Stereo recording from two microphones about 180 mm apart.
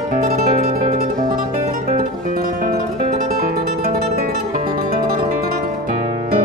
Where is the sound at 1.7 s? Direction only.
45° right (ahead or behind).